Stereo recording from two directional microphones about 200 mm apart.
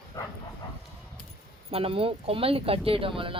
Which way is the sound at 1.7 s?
30° right (ahead or behind).